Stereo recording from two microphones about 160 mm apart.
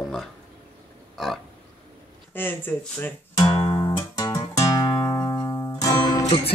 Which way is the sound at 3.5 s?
35° left (ahead or behind).